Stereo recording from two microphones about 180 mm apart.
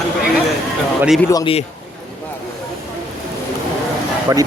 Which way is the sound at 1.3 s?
20° left (ahead or behind).